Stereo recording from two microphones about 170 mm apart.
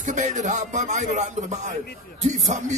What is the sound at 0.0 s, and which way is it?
Speech, 45° right (ahead or behind).